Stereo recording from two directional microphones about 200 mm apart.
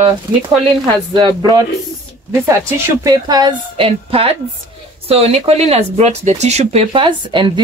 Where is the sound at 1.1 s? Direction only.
20° right (ahead or behind).